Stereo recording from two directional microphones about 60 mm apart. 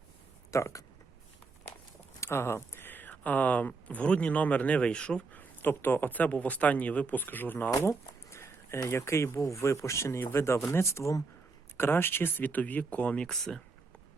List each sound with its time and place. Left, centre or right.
0.5 s speech: left
2.2 s speech: left; by 5.2 s centre
5.3 s speech: left
7.7 s a sound: left
8.9 s speech: left; by 13.6 s centre